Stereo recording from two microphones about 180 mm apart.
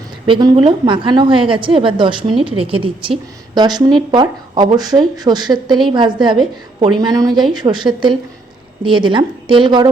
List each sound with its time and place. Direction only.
0.3 s speech: 25° right (ahead or behind)